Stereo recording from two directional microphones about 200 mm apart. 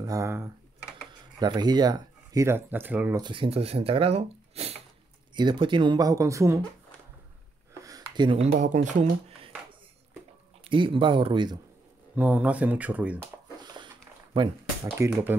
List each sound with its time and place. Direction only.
0.0 s speech: 15° right (ahead or behind)
3.2 s speech: 25° right (ahead or behind)
7.8 s speech: 20° right (ahead or behind)
10.6 s speech: 25° right (ahead or behind)
12.2 s speech: 5° right (ahead or behind)
15.0 s speech: 10° right (ahead or behind)